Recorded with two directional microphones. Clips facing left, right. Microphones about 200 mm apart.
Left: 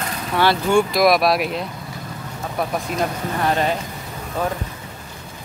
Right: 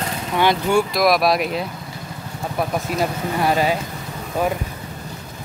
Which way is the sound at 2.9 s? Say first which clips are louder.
Right 1 dB; 5° right (ahead or behind).